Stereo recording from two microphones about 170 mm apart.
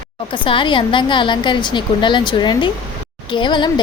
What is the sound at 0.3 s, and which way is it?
A woman's voice, 30° left (ahead or behind).